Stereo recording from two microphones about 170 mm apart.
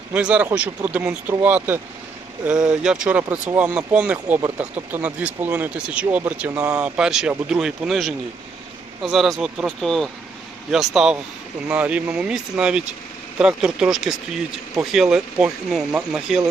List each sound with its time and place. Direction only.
0.1 s speech: 5° right (ahead or behind)